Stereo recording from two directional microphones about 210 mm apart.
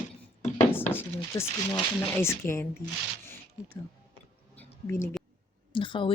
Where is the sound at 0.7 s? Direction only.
10° left (ahead or behind).